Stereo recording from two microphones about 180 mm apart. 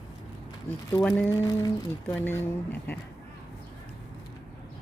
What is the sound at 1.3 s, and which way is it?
Humming, 20° left (ahead or behind).